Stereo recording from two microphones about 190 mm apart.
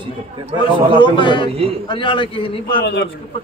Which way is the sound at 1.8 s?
25° left (ahead or behind).